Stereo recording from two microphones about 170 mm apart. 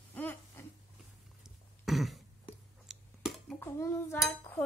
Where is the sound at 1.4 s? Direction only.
Centre (ahead or behind).